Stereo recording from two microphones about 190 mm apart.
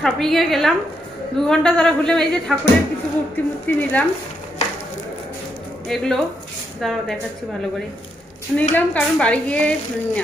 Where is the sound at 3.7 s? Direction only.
10° left (ahead or behind).